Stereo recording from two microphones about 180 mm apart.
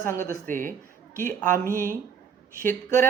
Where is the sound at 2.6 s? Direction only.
10° left (ahead or behind).